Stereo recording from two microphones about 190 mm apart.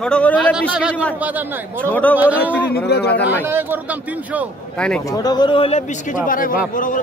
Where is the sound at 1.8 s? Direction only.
10° left (ahead or behind).